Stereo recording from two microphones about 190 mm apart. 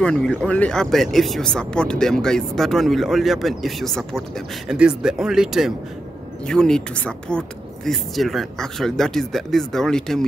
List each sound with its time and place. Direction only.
0.0 s speech: 5° left (ahead or behind)